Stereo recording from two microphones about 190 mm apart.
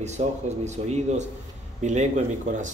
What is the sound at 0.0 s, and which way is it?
Speech, 35° right (ahead or behind).